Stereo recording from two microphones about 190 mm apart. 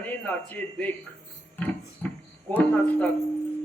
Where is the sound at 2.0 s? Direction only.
10° left (ahead or behind).